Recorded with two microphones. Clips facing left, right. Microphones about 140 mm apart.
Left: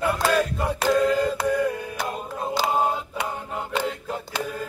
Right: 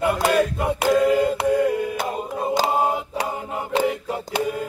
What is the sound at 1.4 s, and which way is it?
Music, 25° right (ahead or behind).